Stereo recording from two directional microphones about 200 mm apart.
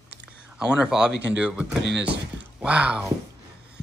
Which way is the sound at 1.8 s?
60° right (ahead or behind).